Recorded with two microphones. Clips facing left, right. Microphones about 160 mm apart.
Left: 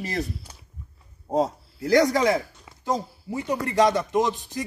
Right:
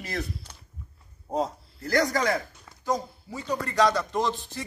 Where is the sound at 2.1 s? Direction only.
25° left (ahead or behind).